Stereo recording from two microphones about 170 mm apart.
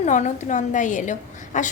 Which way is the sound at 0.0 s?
45° left (ahead or behind).